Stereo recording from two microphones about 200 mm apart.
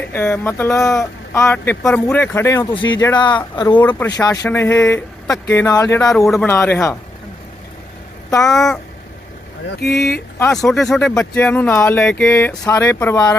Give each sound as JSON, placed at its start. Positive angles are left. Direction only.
{"t": 0.0, "sound": "speech", "side_deg": 10}
{"t": 3.8, "sound": "speech", "side_deg": 10}
{"t": 6.1, "sound": "a man's voice", "side_deg": 0}
{"t": 8.3, "sound": "speech", "side_deg": 15}
{"t": 8.5, "sound": "a man's voice", "side_deg": 0}
{"t": 9.8, "sound": "speech", "side_deg": 55}
{"t": 10.3, "sound": "speech", "side_deg": 10}
{"t": 10.6, "sound": "speech", "side_deg": 0}